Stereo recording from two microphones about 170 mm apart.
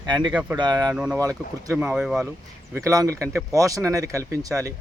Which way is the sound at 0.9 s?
5° right (ahead or behind).